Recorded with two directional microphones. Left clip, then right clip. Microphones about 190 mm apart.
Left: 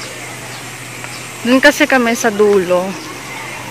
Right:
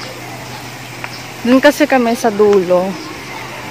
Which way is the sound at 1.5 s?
5° right (ahead or behind).